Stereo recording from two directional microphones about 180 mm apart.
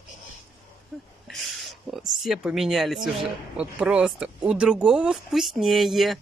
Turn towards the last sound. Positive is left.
turn(degrees=0)  # may be behind; listen again after turning